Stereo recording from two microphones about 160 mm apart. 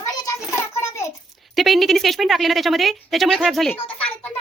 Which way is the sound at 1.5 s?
Centre (ahead or behind).